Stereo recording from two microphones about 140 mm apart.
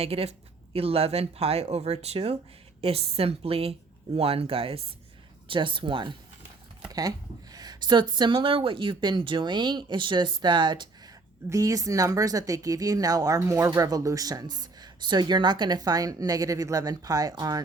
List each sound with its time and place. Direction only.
0.0 s speech: 45° right (ahead or behind)
7.5 s speech: 30° right (ahead or behind)
11.4 s speech: 25° right (ahead or behind)